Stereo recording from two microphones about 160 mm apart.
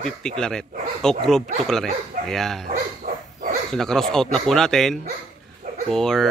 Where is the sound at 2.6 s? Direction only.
60° right (ahead or behind).